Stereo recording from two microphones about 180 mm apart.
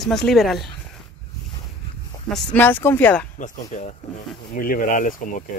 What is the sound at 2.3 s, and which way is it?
Speech, 10° left (ahead or behind).